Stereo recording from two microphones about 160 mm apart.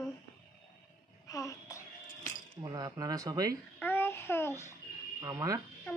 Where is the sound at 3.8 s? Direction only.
15° left (ahead or behind).